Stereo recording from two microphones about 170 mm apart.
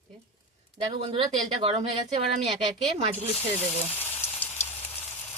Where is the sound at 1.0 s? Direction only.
30° right (ahead or behind).